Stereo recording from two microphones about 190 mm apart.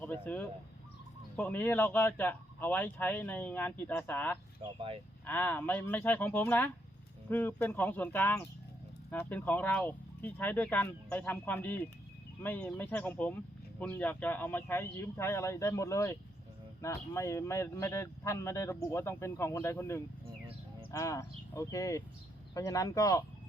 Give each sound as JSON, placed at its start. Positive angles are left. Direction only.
{"t": 0.0, "sound": "speech", "side_deg": 10}
{"t": 4.6, "sound": "speech", "side_deg": -25}
{"t": 5.2, "sound": "speech", "side_deg": 10}